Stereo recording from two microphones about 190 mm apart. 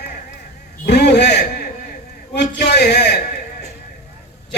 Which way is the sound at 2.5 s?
65° left (ahead or behind).